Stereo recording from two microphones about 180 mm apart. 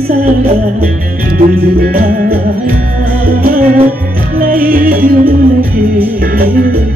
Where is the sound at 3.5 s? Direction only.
55° right (ahead or behind).